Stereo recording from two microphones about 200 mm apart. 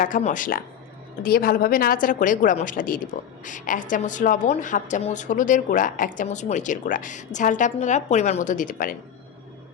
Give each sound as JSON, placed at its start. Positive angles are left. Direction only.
{"t": 0.0, "sound": "a woman's voice", "side_deg": 40}